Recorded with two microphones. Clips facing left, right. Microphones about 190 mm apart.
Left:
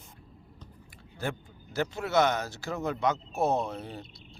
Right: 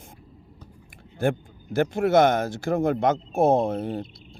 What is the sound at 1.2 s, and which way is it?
Speech, 50° right (ahead or behind).